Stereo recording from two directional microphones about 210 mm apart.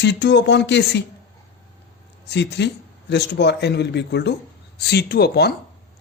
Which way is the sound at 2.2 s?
55° left (ahead or behind).